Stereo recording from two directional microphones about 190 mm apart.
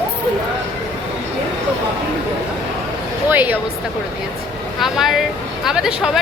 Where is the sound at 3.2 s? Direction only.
10° right (ahead or behind).